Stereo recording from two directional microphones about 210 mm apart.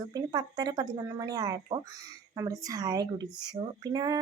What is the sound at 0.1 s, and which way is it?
A woman's voice, 20° right (ahead or behind).